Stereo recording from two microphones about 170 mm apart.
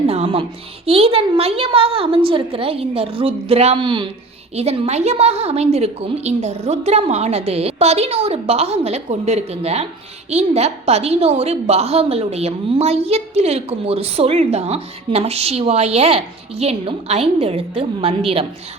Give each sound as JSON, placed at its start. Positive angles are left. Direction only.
{"t": 0.1, "sound": "music", "side_deg": -35}
{"t": 0.9, "sound": "a woman's voice", "side_deg": -35}